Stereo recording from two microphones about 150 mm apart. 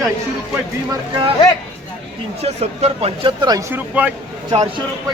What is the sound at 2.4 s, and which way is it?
Speech, 45° right (ahead or behind).